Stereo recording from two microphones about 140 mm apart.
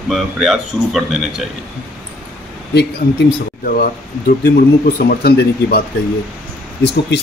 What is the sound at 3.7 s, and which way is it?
Speech, 90° left.